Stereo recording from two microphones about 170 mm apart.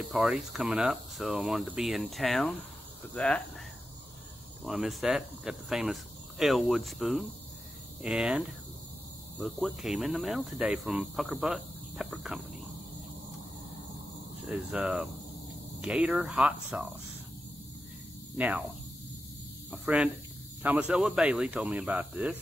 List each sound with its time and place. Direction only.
0.0 s speech: centre (ahead or behind)
4.6 s speech: centre (ahead or behind)
14.4 s speech: 5° right (ahead or behind)
19.7 s speech: 5° right (ahead or behind)